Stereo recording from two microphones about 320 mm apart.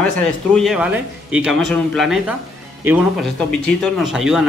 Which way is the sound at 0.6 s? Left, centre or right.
Centre.